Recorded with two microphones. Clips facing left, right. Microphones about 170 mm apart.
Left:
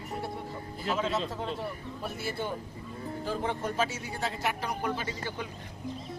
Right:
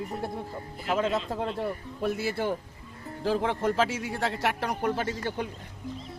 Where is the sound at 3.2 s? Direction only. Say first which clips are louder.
Right 7 dB; 90° right.